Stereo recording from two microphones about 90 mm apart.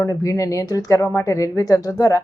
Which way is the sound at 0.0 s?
35° left (ahead or behind).